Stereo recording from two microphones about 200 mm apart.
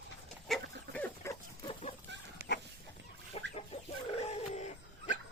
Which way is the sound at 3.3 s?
30° left (ahead or behind).